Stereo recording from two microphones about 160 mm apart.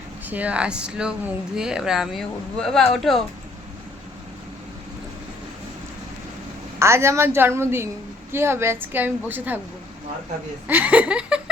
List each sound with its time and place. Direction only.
0.3 s a woman's voice: 10° right (ahead or behind)
6.7 s a woman's voice: 15° right (ahead or behind)
10.7 s a woman's voice: 10° right (ahead or behind)